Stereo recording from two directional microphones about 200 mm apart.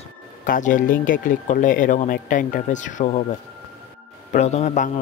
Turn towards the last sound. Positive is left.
turn(degrees=35)  # may be behind; listen again after turning